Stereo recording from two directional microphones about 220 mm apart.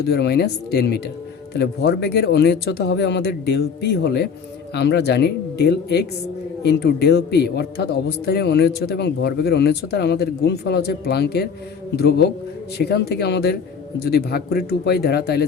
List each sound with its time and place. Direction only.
0.0 s a man's voice: 45° left (ahead or behind)